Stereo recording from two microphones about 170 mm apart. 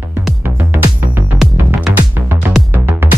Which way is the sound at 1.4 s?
Centre (ahead or behind).